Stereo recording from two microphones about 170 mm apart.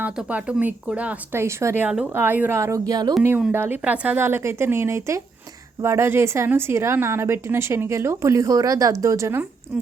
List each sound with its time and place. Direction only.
0.0 s speech: 10° right (ahead or behind)